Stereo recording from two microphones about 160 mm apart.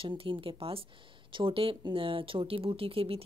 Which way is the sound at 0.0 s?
35° right (ahead or behind).